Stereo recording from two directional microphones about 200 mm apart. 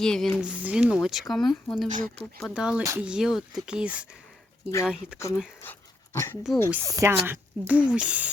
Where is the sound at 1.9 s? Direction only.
40° right (ahead or behind).